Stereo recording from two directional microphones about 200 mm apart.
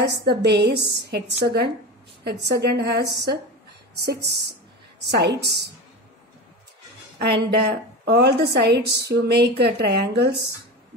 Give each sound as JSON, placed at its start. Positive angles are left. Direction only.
{"t": 0.0, "sound": "a woman's voice", "side_deg": -55}
{"t": 7.2, "sound": "a woman's voice", "side_deg": -55}